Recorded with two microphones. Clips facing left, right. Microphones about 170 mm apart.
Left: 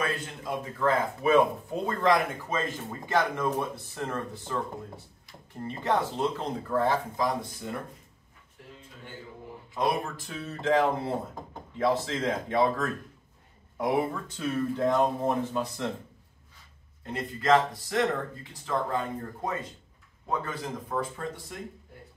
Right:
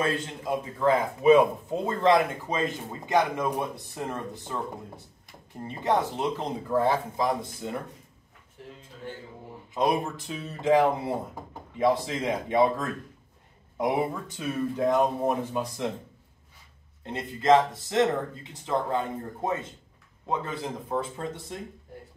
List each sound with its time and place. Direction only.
0.0 s speech: 20° right (ahead or behind)
5.6 s speech: 20° right (ahead or behind)
9.8 s speech: 20° right (ahead or behind)
17.0 s speech: 25° right (ahead or behind)